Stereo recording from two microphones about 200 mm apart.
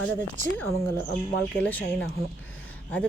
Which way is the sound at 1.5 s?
5° left (ahead or behind).